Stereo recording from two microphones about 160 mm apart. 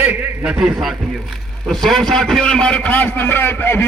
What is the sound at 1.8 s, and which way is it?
A man's voice, centre (ahead or behind).